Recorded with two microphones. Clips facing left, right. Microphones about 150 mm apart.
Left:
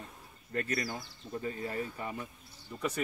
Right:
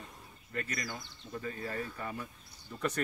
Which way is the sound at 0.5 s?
35° left (ahead or behind).